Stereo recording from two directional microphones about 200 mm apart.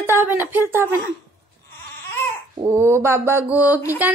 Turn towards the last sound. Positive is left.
turn(degrees=-10)  # may be behind; listen again after turning